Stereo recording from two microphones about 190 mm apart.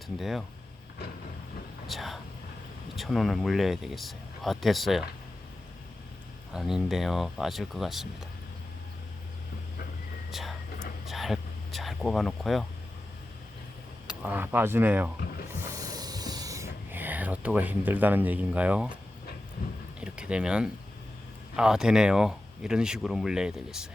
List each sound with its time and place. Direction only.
0.2 s speech: centre (ahead or behind)
1.9 s speech: centre (ahead or behind)
6.5 s speech: 5° right (ahead or behind)
10.3 s speech: centre (ahead or behind)
11.0 s a sound: centre (ahead or behind)
14.1 s speech: 5° right (ahead or behind)
15.2 s speech: 55° left (ahead or behind)
15.6 s hiss: 20° right (ahead or behind)
16.9 s speech: 10° right (ahead or behind)
20.0 s speech: 5° right (ahead or behind)